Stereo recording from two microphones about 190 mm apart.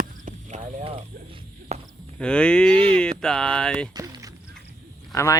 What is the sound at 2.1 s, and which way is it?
Speech, 5° left (ahead or behind).